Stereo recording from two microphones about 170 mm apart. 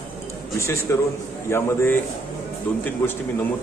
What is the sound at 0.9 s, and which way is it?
A man's voice, 15° left (ahead or behind).